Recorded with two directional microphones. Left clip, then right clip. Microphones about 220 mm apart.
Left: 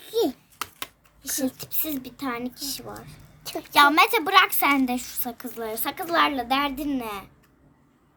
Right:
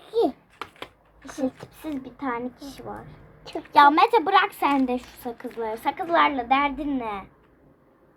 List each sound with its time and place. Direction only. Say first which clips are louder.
0.0 s babbling: right 1 dB; 10° left (ahead or behind)
0.8 s a woman's voice: left 2 dB; 20° left (ahead or behind)